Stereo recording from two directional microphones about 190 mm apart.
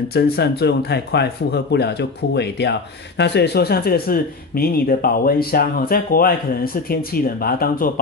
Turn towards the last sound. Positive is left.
turn(degrees=50)  # may be behind; listen again after turning